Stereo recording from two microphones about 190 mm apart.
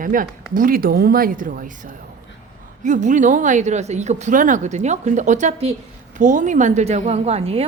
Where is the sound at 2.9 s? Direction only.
40° right (ahead or behind).